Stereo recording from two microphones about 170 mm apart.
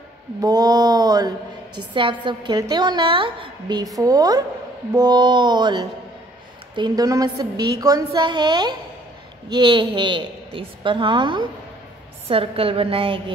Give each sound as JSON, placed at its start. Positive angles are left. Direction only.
{"t": 0.4, "sound": "mantra", "side_deg": -20}
{"t": 2.0, "sound": "a woman's voice", "side_deg": -30}